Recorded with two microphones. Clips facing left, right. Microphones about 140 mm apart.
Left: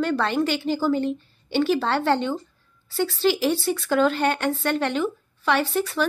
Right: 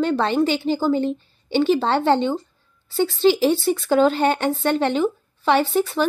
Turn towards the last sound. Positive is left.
turn(degrees=-30)  # may be behind; listen again after turning